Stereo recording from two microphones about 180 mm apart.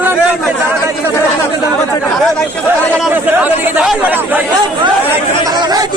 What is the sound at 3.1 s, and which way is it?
Speech, 10° right (ahead or behind).